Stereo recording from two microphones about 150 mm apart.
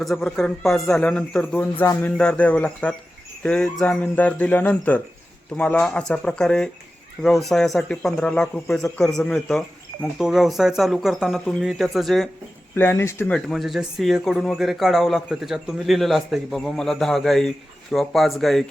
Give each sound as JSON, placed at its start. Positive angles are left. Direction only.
{"t": 0.0, "sound": "a man's voice", "side_deg": 5}
{"t": 12.7, "sound": "a man's voice", "side_deg": 15}
{"t": 13.5, "sound": "speech", "side_deg": 0}